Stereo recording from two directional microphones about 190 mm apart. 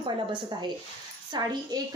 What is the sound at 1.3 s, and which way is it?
Speech, 20° right (ahead or behind).